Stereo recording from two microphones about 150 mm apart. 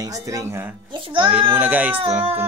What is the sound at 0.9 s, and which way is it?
Speech, 35° right (ahead or behind).